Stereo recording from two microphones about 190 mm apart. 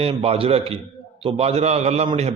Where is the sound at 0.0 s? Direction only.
30° right (ahead or behind).